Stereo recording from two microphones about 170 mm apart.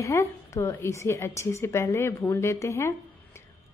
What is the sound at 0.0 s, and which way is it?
A woman's voice, 15° left (ahead or behind).